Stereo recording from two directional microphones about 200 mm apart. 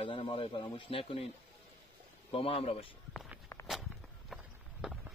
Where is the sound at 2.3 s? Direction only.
30° left (ahead or behind).